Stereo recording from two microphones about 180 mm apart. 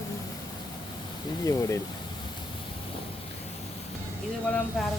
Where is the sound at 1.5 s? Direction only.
15° left (ahead or behind).